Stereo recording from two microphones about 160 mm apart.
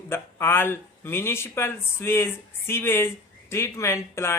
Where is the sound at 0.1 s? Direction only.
15° left (ahead or behind).